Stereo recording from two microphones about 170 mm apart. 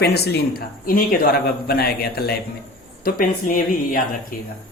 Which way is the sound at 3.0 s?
55° left (ahead or behind).